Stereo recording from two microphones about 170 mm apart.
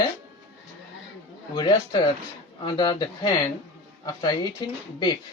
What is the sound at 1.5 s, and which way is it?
A man's voice, 25° left (ahead or behind).